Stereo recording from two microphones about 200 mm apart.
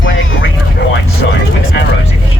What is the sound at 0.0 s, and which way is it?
Vehicle, 70° left (ahead or behind).